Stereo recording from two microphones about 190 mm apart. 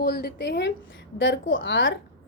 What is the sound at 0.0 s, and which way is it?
Speech, 55° left (ahead or behind).